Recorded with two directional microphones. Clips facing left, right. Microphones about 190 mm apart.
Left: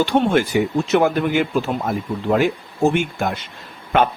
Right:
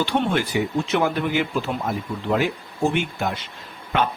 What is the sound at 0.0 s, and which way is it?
Speech, 45° left (ahead or behind).